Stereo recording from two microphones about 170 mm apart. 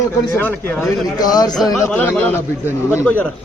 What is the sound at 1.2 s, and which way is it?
A man's voice, 20° left (ahead or behind).